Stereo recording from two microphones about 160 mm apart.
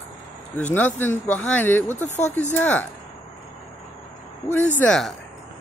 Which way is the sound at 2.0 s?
45° left (ahead or behind).